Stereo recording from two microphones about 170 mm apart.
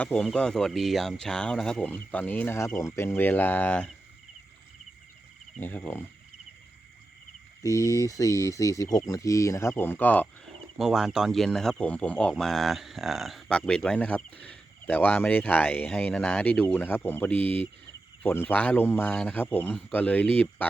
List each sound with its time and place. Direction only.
0.0 s speech: 5° left (ahead or behind)
5.5 s speech: 10° left (ahead or behind)
7.6 s speech: 20° left (ahead or behind)
10.8 s speech: centre (ahead or behind)